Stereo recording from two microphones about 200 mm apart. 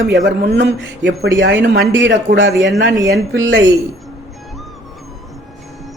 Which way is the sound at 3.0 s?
55° right (ahead or behind).